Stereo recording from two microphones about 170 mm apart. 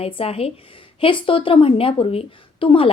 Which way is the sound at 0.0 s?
35° left (ahead or behind).